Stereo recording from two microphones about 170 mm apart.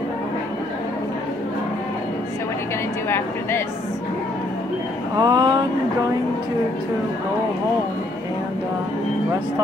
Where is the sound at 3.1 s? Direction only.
15° left (ahead or behind).